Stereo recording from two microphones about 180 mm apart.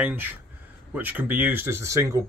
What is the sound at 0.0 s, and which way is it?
Speech, 10° right (ahead or behind).